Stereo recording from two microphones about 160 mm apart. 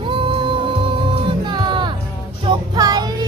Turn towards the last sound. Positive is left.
turn(degrees=-25)  # may be behind; listen again after turning